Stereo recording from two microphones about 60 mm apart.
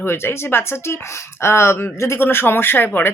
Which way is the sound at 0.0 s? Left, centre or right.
Left.